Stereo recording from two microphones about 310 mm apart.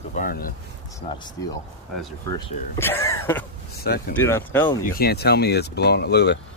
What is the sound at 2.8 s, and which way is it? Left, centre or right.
Speech, centre.